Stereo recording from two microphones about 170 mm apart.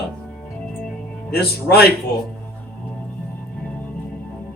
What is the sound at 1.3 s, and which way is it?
Speech, 65° left (ahead or behind).